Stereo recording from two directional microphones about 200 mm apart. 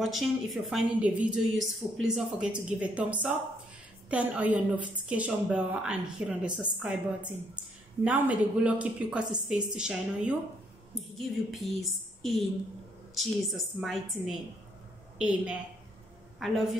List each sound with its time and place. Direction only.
0.0 s a woman's voice: centre (ahead or behind)
8.0 s a woman's voice: 5° right (ahead or behind)